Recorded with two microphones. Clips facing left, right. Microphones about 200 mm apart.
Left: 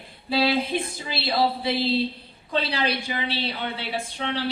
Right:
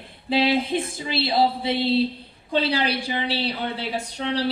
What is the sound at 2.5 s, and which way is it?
A woman's voice, 30° right (ahead or behind).